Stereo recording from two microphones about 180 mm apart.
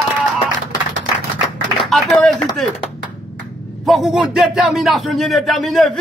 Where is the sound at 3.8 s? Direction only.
Centre (ahead or behind).